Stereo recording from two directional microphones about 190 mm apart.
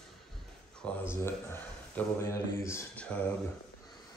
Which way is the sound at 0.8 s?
10° left (ahead or behind).